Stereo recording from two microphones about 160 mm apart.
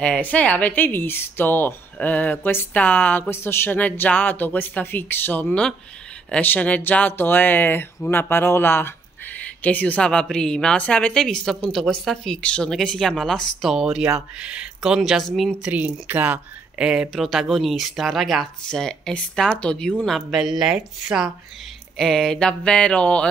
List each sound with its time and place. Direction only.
0.0 s a woman's voice: 10° left (ahead or behind)